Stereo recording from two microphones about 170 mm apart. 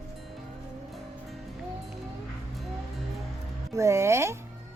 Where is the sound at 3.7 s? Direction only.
15° right (ahead or behind).